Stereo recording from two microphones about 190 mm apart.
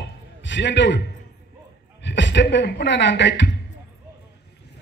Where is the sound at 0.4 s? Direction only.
70° left (ahead or behind).